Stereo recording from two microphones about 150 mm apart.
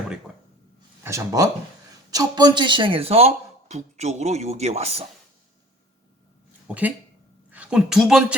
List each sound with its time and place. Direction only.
1.0 s speech: 20° right (ahead or behind); by 5.0 s 45° right (ahead or behind)
6.7 s a woman's voice: 10° right (ahead or behind)